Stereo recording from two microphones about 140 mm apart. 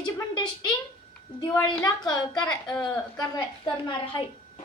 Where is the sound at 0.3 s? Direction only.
30° left (ahead or behind).